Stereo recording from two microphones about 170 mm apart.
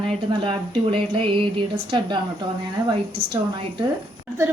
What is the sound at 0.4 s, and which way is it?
Speech, 30° right (ahead or behind).